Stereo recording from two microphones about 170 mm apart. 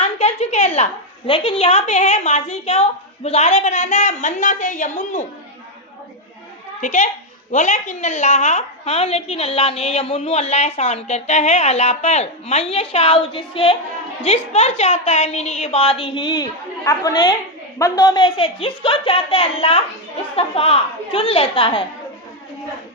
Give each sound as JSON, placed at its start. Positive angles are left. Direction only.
{"t": 0.0, "sound": "a sound", "side_deg": 40}
{"t": 1.3, "sound": "a woman's voice", "side_deg": 35}
{"t": 6.8, "sound": "a woman's voice", "side_deg": 45}